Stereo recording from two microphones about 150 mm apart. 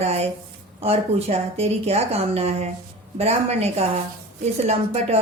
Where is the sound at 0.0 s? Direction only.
45° right (ahead or behind).